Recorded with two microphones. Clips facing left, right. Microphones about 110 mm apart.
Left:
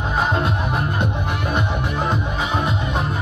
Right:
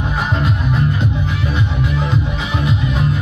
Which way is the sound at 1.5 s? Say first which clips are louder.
Right 1 dB; 45° left (ahead or behind).